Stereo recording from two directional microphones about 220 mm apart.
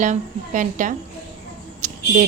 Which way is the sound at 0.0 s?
35° right (ahead or behind).